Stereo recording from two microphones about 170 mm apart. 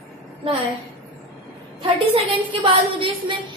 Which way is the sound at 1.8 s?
30° right (ahead or behind).